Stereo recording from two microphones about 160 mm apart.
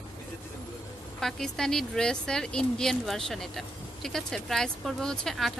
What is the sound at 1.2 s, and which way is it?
A woman's voice, 5° left (ahead or behind).